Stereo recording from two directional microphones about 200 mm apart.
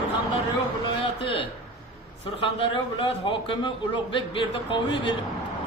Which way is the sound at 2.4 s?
25° left (ahead or behind).